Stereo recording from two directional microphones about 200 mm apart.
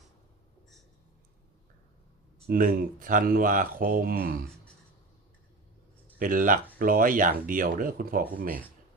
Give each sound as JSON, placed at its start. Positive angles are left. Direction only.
{"t": 2.5, "sound": "speech", "side_deg": -40}
{"t": 6.1, "sound": "speech", "side_deg": -45}